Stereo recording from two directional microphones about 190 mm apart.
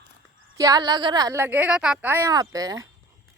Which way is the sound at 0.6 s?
20° right (ahead or behind).